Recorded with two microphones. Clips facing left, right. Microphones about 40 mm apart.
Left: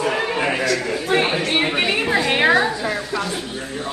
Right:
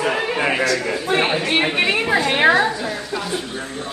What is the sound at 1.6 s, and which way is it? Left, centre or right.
Chatter, centre.